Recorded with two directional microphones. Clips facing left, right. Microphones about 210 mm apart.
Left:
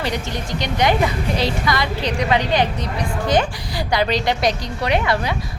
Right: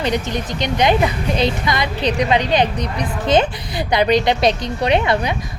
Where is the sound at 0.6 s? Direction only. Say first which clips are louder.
Right 2 dB; 20° right (ahead or behind).